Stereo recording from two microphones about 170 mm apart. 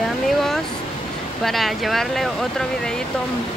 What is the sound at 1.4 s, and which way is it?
Speech, centre (ahead or behind).